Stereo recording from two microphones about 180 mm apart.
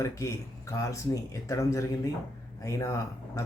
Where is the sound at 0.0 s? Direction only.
15° left (ahead or behind).